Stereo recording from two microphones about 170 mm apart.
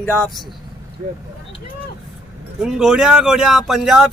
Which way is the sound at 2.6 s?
5° right (ahead or behind).